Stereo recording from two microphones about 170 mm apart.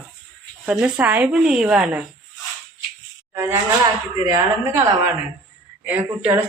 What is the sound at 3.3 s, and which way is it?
Speech, 15° right (ahead or behind).